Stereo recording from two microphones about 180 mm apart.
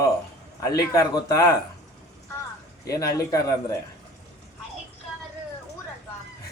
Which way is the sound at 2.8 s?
20° left (ahead or behind).